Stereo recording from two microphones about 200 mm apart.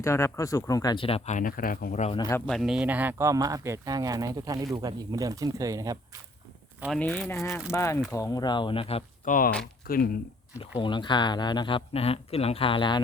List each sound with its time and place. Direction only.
0.0 s speech: 15° left (ahead or behind); by 2.1 s 35° left (ahead or behind)
2.1 s speech: 15° left (ahead or behind)
2.5 s speech: centre (ahead or behind); by 6.0 s 15° right (ahead or behind)
6.8 s speech: 5° left (ahead or behind)
7.4 s speech: 15° left (ahead or behind); by 9.3 s 30° left (ahead or behind)
9.8 s speech: 50° left (ahead or behind)
10.8 s speech: 25° left (ahead or behind)